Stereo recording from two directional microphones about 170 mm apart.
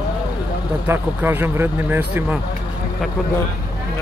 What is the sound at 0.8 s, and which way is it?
Speech, 15° right (ahead or behind).